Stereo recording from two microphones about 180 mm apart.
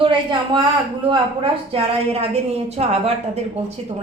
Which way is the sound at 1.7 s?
35° right (ahead or behind).